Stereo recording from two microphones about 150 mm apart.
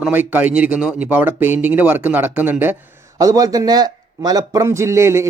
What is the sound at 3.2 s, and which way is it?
A man's voice, 25° right (ahead or behind).